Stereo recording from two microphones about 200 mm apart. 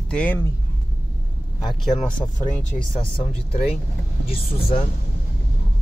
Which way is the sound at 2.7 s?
25° left (ahead or behind).